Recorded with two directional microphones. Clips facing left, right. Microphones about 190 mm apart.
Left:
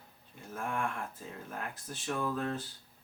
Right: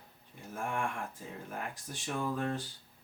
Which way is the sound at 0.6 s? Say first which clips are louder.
Even; 15° right (ahead or behind).